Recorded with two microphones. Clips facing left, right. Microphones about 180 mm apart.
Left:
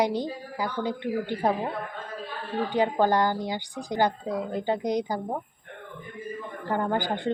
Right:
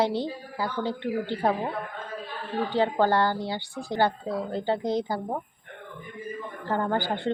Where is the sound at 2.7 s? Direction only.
15° left (ahead or behind).